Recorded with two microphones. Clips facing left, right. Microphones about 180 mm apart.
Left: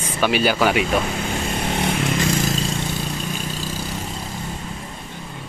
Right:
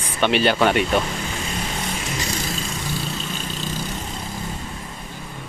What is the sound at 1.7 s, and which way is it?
Vehicle, 60° left (ahead or behind).